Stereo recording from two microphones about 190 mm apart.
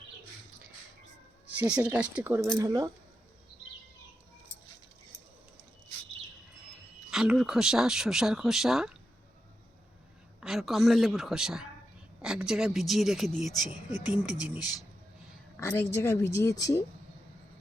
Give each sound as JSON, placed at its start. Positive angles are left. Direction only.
{"t": 1.5, "sound": "speech", "side_deg": -5}
{"t": 7.1, "sound": "speech", "side_deg": 0}
{"t": 10.4, "sound": "speech", "side_deg": 0}
{"t": 15.5, "sound": "a woman's voice", "side_deg": 10}